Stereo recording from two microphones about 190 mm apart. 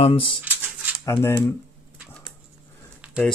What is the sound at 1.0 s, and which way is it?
Speech, 10° left (ahead or behind).